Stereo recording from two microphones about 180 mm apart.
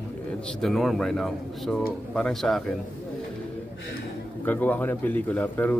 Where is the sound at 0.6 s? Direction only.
Centre (ahead or behind).